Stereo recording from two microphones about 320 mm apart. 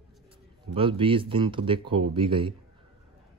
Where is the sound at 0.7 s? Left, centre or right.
Centre.